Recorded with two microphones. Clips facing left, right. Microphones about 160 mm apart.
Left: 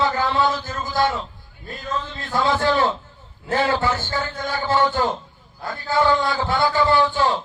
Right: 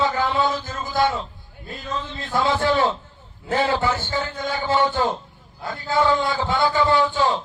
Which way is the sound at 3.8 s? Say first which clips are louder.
Even; 20° right (ahead or behind).